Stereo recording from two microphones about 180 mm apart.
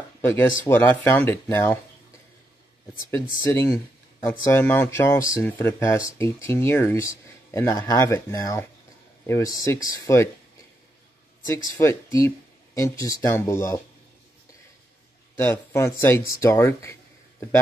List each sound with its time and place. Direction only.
0.3 s speech: 10° left (ahead or behind)
3.3 s speech: 15° left (ahead or behind)
11.4 s speech: 15° left (ahead or behind)
15.4 s speech: 15° left (ahead or behind)